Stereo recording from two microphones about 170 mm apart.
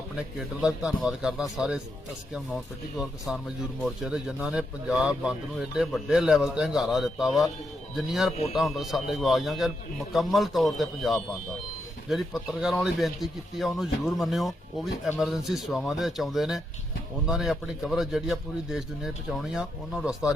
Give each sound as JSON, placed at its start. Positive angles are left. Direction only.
{"t": 0.3, "sound": "speech", "side_deg": -5}
{"t": 3.0, "sound": "speech", "side_deg": 0}